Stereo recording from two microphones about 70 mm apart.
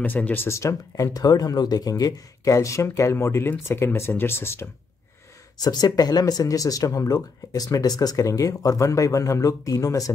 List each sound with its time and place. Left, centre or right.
0.0 s speech: left
0.5 s speech: left
5.6 s speech: left